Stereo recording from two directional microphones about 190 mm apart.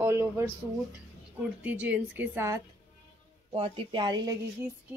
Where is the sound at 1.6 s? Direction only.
10° right (ahead or behind).